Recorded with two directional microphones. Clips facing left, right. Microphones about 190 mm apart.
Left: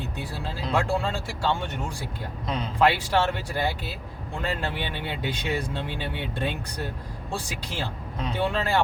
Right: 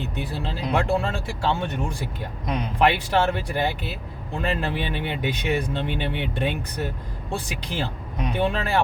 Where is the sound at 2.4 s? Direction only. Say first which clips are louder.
Right 1 dB; 15° right (ahead or behind).